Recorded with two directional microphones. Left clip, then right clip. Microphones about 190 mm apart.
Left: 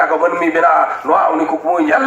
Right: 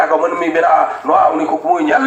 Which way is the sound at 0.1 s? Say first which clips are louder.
Even; 15° right (ahead or behind).